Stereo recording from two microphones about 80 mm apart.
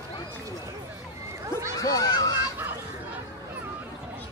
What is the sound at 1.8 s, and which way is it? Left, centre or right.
Speech, left.